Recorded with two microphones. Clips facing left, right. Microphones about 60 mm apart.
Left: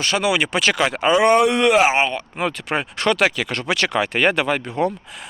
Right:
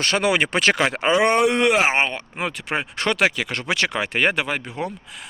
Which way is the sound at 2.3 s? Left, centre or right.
Centre.